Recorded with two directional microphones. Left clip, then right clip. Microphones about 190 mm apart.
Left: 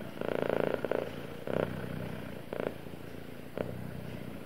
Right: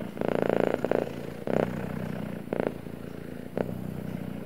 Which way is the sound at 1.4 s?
20° right (ahead or behind).